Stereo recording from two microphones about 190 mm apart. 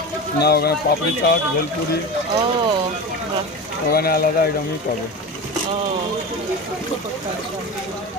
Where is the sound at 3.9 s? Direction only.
55° left (ahead or behind).